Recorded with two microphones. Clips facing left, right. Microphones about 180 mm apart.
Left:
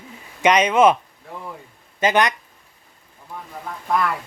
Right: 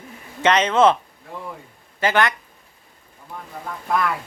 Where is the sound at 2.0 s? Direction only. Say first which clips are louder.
Left 1 dB; 20° left (ahead or behind).